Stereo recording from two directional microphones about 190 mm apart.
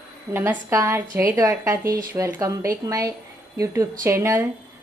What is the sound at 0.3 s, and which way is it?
A woman's voice, 15° right (ahead or behind).